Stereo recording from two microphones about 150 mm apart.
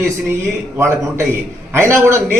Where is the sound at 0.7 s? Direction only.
15° right (ahead or behind).